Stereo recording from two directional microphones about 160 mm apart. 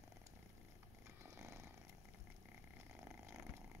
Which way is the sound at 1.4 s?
20° right (ahead or behind).